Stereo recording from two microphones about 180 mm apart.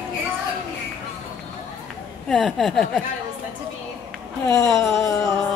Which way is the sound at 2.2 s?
Centre (ahead or behind).